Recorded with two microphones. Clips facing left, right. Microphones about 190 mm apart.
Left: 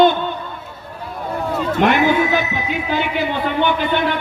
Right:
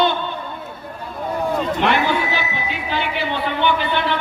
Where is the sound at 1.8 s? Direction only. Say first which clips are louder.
Left 7 dB; 45° left (ahead or behind).